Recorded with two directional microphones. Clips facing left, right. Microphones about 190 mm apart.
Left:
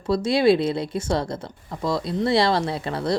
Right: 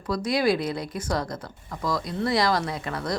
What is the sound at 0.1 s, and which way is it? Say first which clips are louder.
Speech: left 5 dB; 25° left (ahead or behind).